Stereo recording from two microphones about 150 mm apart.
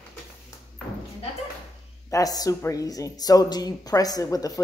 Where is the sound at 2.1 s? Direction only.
25° left (ahead or behind).